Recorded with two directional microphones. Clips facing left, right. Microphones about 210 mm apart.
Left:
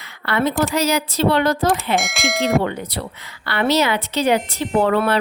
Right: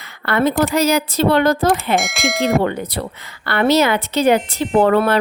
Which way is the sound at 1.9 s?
Centre (ahead or behind).